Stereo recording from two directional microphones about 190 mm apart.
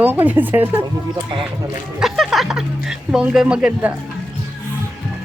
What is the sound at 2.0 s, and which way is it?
Speech, centre (ahead or behind).